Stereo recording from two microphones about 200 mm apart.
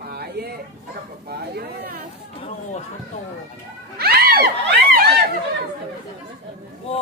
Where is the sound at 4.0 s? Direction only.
50° right (ahead or behind).